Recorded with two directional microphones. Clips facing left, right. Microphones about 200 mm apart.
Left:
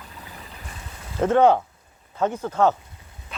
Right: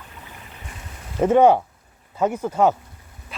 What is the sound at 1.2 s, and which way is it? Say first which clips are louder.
Speech: right 2 dB; 15° right (ahead or behind).